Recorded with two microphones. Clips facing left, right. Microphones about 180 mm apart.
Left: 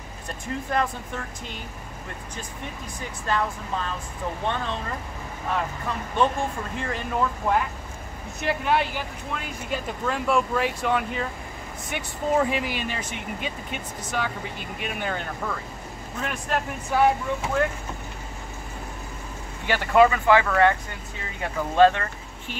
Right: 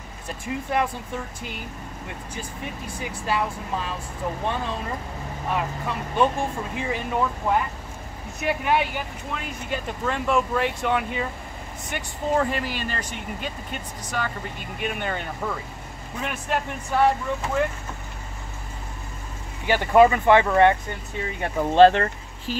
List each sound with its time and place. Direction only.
0.7 s speech: 10° right (ahead or behind)
3.0 s speech: 10° right (ahead or behind)
5.5 s speech: 5° right (ahead or behind)
19.7 s speech: 20° right (ahead or behind)
21.7 s speech: 30° right (ahead or behind)